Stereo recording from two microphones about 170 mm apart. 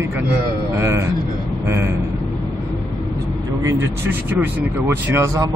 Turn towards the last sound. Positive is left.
turn(degrees=-15)  # may be behind; listen again after turning